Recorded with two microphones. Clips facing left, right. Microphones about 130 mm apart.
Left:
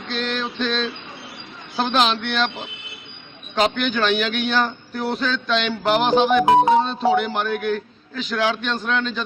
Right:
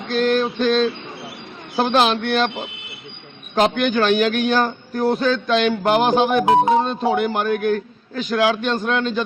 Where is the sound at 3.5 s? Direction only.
50° right (ahead or behind).